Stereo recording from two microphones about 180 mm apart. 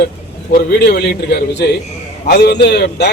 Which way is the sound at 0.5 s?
60° left (ahead or behind).